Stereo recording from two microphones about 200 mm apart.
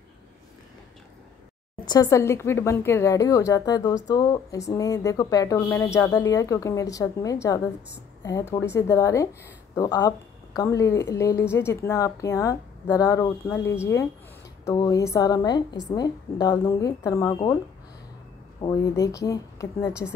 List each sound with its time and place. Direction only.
1.9 s a woman's voice: 15° left (ahead or behind)
18.6 s speech: 15° left (ahead or behind)